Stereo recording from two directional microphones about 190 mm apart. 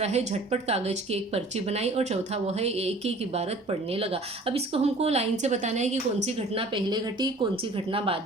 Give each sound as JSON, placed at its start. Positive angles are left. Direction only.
{"t": 0.0, "sound": "a woman's voice", "side_deg": -35}